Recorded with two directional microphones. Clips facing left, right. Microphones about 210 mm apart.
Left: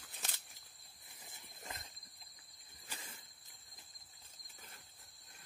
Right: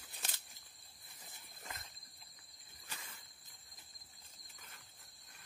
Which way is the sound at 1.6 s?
30° left (ahead or behind).